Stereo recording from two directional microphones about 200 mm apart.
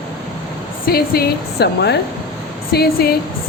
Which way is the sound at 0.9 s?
50° left (ahead or behind).